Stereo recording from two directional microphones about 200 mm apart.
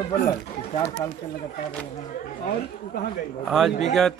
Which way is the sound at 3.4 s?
Centre (ahead or behind).